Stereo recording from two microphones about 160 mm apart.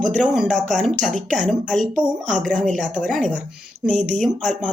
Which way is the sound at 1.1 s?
50° right (ahead or behind).